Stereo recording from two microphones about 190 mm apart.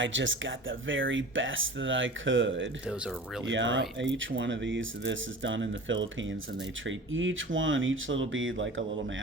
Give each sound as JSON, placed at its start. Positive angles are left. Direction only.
{"t": 0.0, "sound": "speech", "side_deg": -80}
{"t": 2.8, "sound": "speech", "side_deg": -5}
{"t": 3.5, "sound": "speech", "side_deg": -75}